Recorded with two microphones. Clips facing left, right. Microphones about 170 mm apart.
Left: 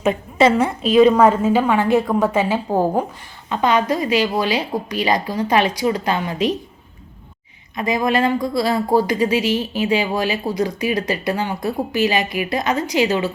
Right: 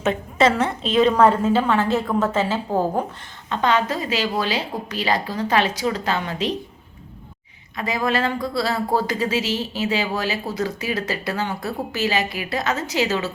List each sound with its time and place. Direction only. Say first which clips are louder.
0.0 s a woman's voice: left 3 dB; 10° left (ahead or behind)
7.8 s speech: left 4 dB; 15° left (ahead or behind)